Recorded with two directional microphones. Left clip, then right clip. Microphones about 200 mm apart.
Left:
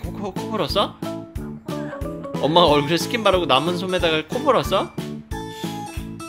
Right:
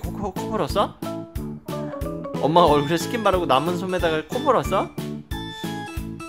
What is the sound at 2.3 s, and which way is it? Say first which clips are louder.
Speech: left 1 dB; centre (ahead or behind).